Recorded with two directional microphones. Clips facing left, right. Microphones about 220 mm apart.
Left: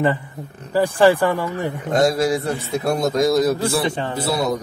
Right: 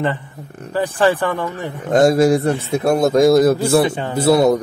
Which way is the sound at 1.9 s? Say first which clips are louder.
Right 6 dB; 50° right (ahead or behind).